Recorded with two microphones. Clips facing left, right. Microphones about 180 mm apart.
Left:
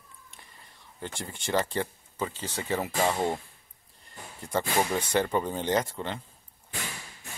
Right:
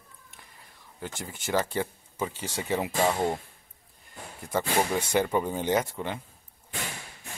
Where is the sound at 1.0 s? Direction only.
5° right (ahead or behind).